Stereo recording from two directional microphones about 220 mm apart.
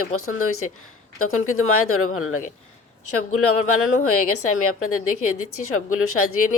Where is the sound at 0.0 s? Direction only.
75° left (ahead or behind).